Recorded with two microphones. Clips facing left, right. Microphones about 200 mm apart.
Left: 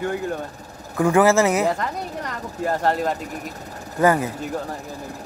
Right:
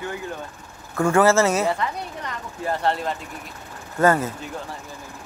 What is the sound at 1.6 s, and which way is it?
Speech, 45° left (ahead or behind).